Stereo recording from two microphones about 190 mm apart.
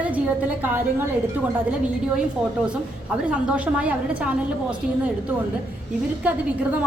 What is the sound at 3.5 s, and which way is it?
Speech, 5° right (ahead or behind).